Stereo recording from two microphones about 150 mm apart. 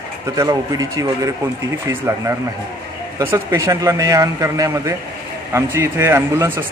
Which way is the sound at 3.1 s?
20° right (ahead or behind).